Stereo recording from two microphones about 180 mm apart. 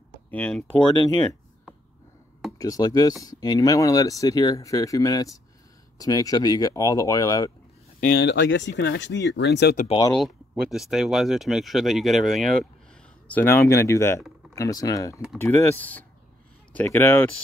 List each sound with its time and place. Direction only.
0.3 s speech: 5° left (ahead or behind)
2.6 s speech: 20° left (ahead or behind)
8.0 s speech: 55° left (ahead or behind)
9.8 s speech: 20° left (ahead or behind)
10.5 s speech: centre (ahead or behind)
13.3 s speech: 10° left (ahead or behind)